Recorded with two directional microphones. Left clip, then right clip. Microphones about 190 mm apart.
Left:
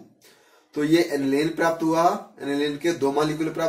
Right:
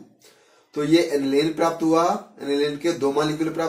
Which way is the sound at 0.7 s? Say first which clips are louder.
Right 2 dB; 20° right (ahead or behind).